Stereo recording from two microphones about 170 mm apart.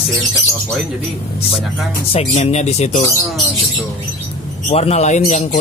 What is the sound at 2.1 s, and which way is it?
Speech, 40° left (ahead or behind).